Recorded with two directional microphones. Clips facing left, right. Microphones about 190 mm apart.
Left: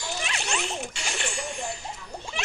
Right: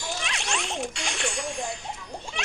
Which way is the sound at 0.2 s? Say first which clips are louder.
Left 1 dB; 5° left (ahead or behind).